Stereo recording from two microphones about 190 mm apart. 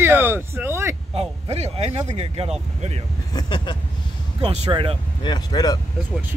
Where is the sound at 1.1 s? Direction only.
35° right (ahead or behind).